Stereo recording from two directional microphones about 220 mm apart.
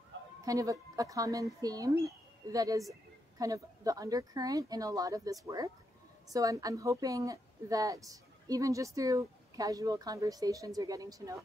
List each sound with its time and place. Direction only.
0.4 s a woman's voice: 15° right (ahead or behind)